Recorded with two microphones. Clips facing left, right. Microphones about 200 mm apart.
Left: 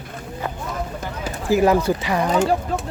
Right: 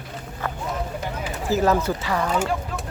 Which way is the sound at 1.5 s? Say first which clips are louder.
Left 4 dB; 15° left (ahead or behind).